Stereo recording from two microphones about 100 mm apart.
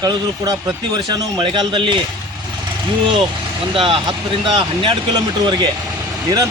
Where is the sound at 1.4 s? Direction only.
55° right (ahead or behind).